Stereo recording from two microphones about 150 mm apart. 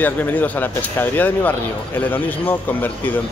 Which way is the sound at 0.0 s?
10° left (ahead or behind).